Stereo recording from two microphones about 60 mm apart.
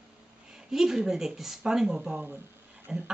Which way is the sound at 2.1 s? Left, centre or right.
Right.